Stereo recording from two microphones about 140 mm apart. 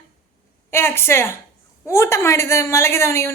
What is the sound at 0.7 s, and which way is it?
A woman's voice, 15° left (ahead or behind).